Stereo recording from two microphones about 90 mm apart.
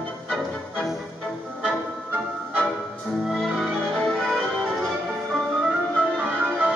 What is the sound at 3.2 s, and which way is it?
Music, centre (ahead or behind).